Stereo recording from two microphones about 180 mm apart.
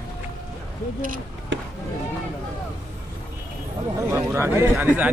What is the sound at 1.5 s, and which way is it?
Chop, 90° right.